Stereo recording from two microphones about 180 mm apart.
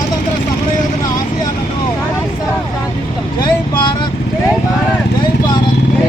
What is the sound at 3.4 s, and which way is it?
Speech, 25° left (ahead or behind).